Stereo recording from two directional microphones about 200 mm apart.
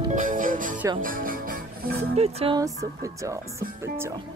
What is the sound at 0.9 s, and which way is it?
Speech, 45° right (ahead or behind).